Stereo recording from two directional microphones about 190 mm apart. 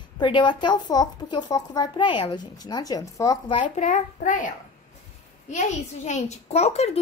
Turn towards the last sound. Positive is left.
turn(degrees=35)  # may be behind; listen again after turning